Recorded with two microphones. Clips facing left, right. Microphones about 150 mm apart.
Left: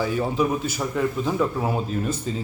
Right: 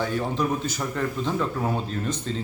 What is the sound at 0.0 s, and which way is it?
A man's voice, 5° left (ahead or behind).